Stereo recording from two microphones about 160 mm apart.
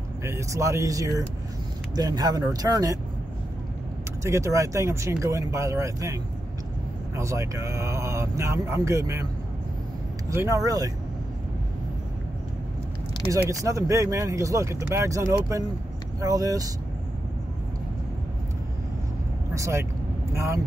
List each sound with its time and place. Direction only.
0.2 s speech: 20° right (ahead or behind)
4.2 s speech: 20° right (ahead or behind)
7.2 s speech: 20° right (ahead or behind)
10.3 s speech: 20° right (ahead or behind)
13.5 s speech: 20° right (ahead or behind)
19.5 s vehicle: 20° right (ahead or behind)
20.3 s speech: 20° right (ahead or behind)